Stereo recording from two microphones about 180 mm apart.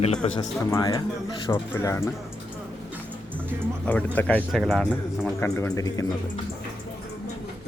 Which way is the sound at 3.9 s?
10° left (ahead or behind).